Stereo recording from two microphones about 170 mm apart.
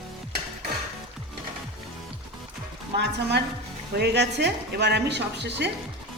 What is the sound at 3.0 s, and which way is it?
Speech, 80° right.